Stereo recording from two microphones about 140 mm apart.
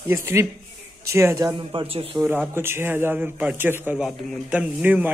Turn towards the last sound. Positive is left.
turn(degrees=-10)  # may be behind; listen again after turning